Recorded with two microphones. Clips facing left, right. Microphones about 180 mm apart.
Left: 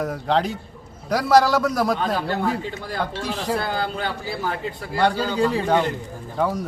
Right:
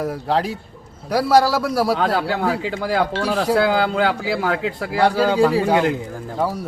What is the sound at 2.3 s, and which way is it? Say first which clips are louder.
Speech: right 3 dB; 90° right.